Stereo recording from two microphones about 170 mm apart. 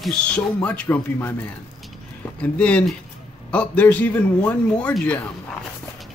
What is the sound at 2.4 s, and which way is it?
Speech, 5° left (ahead or behind).